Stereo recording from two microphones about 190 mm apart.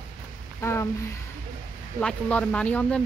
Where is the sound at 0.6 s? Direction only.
15° left (ahead or behind).